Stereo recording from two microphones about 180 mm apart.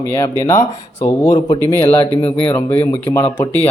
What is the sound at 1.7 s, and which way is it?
Speech, 15° left (ahead or behind).